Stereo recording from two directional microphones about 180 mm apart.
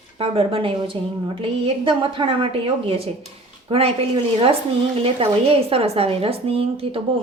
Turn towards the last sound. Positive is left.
turn(degrees=-35)  # may be behind; listen again after turning